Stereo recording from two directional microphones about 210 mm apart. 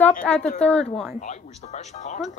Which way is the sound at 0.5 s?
5° left (ahead or behind).